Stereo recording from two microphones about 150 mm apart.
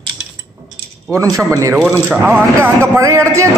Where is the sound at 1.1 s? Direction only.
20° right (ahead or behind).